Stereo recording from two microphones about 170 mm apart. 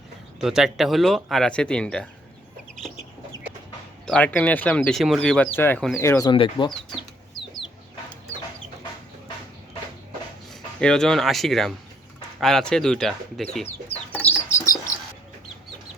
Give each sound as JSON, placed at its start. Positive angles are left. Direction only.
{"t": 0.3, "sound": "speech", "side_deg": 0}
{"t": 4.0, "sound": "speech", "side_deg": 5}
{"t": 6.3, "sound": "speech", "side_deg": 30}
{"t": 10.5, "sound": "speech", "side_deg": 5}